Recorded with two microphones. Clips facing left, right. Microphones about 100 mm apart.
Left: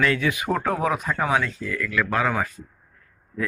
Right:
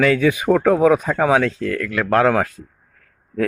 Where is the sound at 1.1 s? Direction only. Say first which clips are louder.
Right 7 dB; 90° right.